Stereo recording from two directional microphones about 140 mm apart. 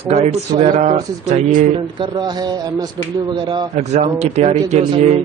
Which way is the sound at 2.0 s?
30° right (ahead or behind).